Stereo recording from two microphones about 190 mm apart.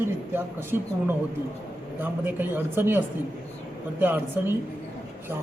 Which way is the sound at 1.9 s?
10° right (ahead or behind).